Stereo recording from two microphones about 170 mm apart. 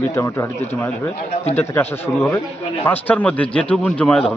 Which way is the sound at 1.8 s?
10° left (ahead or behind).